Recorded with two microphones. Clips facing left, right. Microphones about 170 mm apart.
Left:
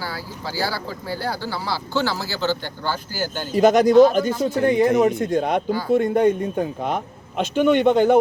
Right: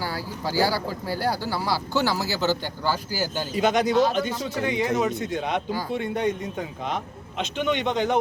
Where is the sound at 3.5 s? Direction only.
45° left (ahead or behind).